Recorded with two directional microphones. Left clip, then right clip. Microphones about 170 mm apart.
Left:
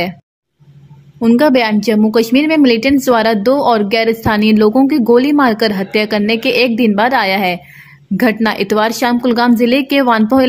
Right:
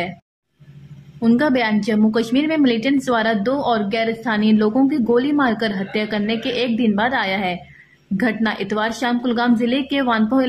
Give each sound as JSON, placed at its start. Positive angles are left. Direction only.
{"t": 1.2, "sound": "a woman's voice", "side_deg": 25}